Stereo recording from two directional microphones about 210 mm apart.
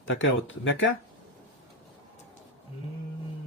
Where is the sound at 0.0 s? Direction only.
65° left (ahead or behind).